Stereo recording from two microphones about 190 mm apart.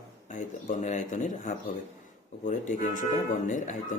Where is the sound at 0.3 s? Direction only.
40° left (ahead or behind).